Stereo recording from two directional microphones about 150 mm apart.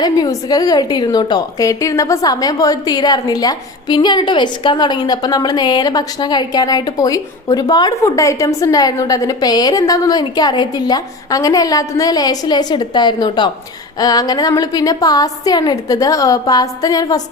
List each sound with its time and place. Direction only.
0.0 s a woman's voice: 25° left (ahead or behind)